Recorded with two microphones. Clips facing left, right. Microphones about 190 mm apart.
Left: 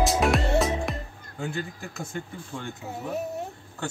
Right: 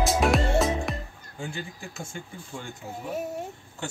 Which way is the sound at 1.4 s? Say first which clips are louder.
Left 5 dB; 60° left (ahead or behind).